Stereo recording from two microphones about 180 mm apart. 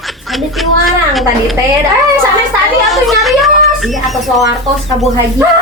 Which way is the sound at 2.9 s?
Centre (ahead or behind).